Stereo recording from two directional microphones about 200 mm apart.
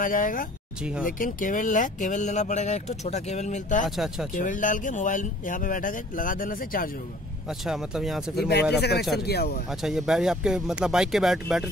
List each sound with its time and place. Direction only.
0.0 s speech: 40° left (ahead or behind)
3.9 s speech: centre (ahead or behind)
4.4 s speech: 40° left (ahead or behind)
7.4 s speech: centre (ahead or behind)
8.4 s speech: 55° left (ahead or behind)
9.7 s speech: centre (ahead or behind)